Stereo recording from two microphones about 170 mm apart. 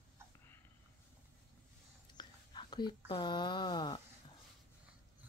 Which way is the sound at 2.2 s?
25° left (ahead or behind).